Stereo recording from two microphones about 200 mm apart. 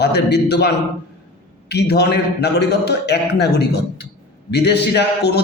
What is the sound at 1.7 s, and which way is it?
A man's voice, 55° left (ahead or behind).